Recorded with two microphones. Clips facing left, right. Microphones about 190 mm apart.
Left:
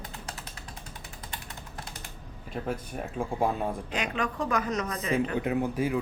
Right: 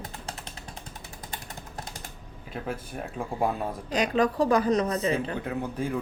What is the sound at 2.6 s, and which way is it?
Speech, centre (ahead or behind).